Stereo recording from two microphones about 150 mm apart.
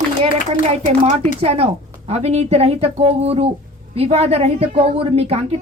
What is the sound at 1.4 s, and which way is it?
A woman's voice, 40° right (ahead or behind).